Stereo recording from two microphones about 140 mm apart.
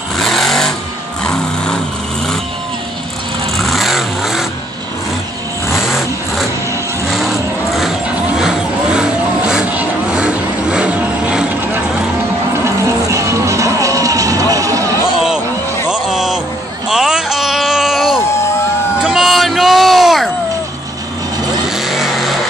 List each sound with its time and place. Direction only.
0.2 s sewing machine: centre (ahead or behind)
1.2 s vehicle: 5° left (ahead or behind)
3.5 s vehicle: centre (ahead or behind)
5.8 s vehicle: centre (ahead or behind)
12.6 s music: 20° right (ahead or behind)
15.9 s a sound: 5° right (ahead or behind)
21.6 s vehicle: centre (ahead or behind)